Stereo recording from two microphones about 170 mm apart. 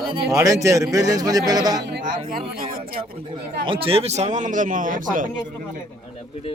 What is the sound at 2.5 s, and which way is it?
Speech, 60° right (ahead or behind).